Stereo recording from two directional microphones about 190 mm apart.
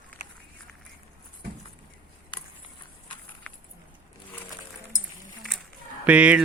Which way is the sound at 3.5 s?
5° left (ahead or behind).